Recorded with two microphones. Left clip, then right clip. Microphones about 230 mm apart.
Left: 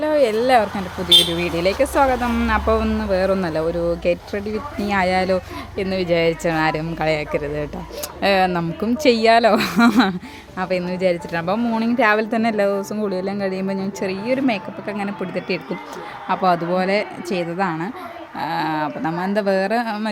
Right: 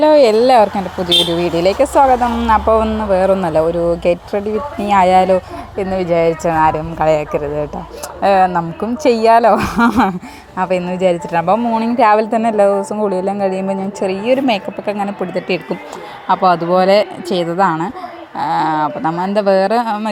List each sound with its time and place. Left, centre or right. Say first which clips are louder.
0.0 s speech: right 8 dB; right
1.4 s a woman's voice: right 6 dB; centre
5.7 s speech: right 5 dB; centre
9.9 s a woman's voice: right 4 dB; centre
10.6 s a woman's voice: right 6 dB; centre